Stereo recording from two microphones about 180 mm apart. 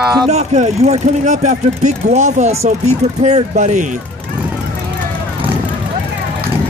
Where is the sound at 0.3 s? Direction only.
35° right (ahead or behind).